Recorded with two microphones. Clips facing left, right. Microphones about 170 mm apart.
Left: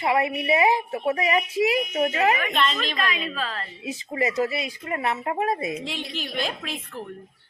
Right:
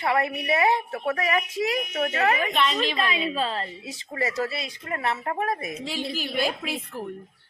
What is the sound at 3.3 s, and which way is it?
Speech, 30° right (ahead or behind).